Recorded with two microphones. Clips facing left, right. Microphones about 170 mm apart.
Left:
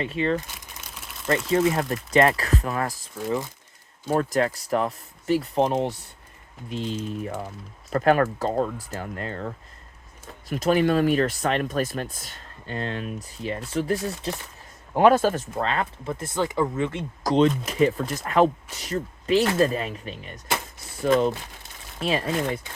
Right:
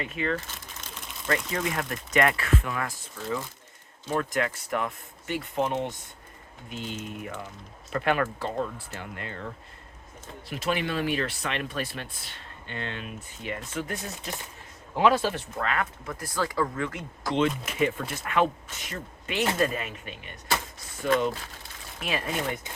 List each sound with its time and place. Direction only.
0.0 s speech: 30° left (ahead or behind)
0.3 s crumpling: 10° left (ahead or behind)
1.3 s speech: 30° left (ahead or behind)
4.1 s speech: 35° left (ahead or behind)
10.5 s speech: 40° left (ahead or behind)
14.9 s speech: 50° left (ahead or behind)
15.5 s speech: 30° left (ahead or behind)